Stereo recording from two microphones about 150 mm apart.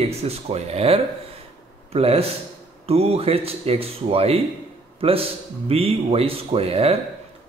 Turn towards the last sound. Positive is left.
turn(degrees=-40)  # may be behind; listen again after turning